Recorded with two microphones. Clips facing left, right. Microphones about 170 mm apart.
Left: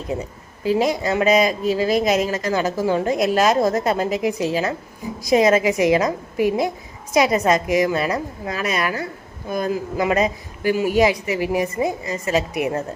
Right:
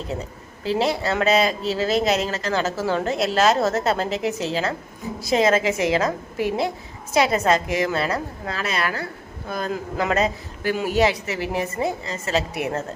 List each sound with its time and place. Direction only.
0.1 s speech: 15° left (ahead or behind)